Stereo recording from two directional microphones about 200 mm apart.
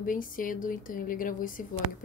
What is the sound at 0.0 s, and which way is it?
A woman's voice, 45° left (ahead or behind).